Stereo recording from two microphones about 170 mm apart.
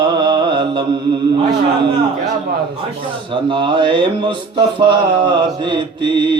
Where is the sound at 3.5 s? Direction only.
30° right (ahead or behind).